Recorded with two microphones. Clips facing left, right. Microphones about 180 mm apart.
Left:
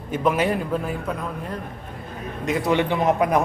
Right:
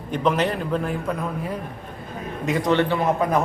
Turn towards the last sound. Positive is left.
turn(degrees=15)  # may be behind; listen again after turning